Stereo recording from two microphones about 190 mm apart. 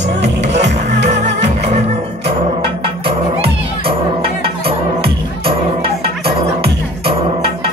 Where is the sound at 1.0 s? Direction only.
35° right (ahead or behind).